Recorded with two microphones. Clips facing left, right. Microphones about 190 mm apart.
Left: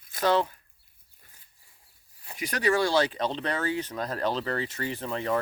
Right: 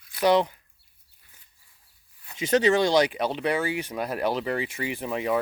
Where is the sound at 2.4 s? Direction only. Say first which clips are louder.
Right 5 dB; 25° right (ahead or behind).